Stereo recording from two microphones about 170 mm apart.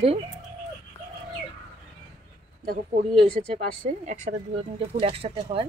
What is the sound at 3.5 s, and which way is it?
Speech, 45° right (ahead or behind).